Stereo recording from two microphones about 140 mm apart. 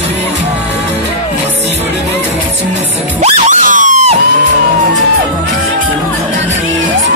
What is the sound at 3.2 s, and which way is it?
Music, 55° right (ahead or behind).